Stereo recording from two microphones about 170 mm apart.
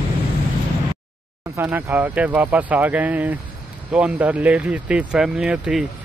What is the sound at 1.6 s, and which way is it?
Speech, 15° right (ahead or behind).